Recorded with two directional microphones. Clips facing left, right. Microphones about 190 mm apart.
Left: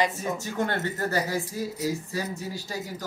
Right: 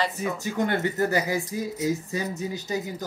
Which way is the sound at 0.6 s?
15° right (ahead or behind).